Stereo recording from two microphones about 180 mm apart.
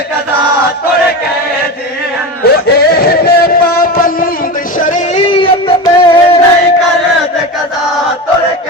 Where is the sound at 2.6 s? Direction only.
60° left (ahead or behind).